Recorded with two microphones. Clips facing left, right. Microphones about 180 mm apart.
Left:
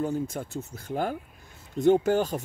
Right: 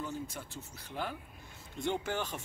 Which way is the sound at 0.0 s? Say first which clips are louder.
Left 11 dB; 50° left (ahead or behind).